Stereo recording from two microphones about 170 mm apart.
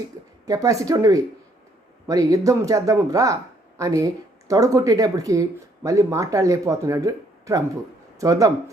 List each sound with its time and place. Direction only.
0.4 s speech: 20° right (ahead or behind)